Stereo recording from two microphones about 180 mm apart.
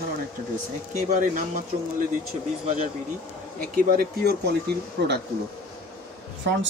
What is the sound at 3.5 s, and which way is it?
Speech, 55° right (ahead or behind).